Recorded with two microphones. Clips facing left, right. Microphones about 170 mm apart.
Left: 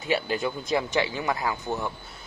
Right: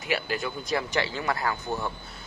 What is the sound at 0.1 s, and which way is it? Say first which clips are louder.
Speech: left 3 dB; 25° left (ahead or behind).